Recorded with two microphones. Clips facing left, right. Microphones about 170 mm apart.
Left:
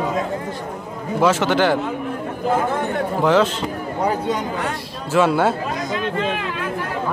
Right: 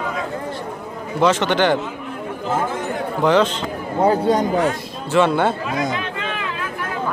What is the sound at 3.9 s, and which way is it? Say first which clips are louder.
Speech: right 6 dB; 30° right (ahead or behind).